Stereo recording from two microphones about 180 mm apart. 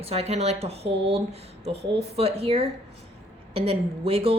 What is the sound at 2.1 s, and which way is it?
Speech, 35° right (ahead or behind).